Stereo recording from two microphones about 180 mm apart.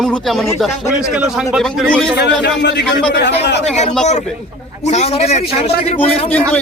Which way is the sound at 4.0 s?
40° left (ahead or behind).